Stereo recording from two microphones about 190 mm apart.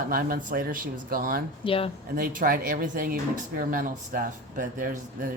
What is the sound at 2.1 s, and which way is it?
Speech, 45° right (ahead or behind).